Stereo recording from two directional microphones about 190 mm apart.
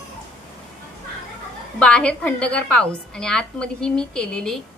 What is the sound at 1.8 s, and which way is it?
A woman's voice, 5° left (ahead or behind).